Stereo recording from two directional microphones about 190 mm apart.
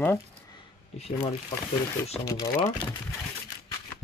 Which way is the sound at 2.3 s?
15° left (ahead or behind).